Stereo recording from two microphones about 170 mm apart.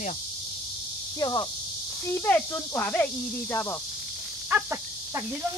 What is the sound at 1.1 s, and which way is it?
Speech, 20° left (ahead or behind).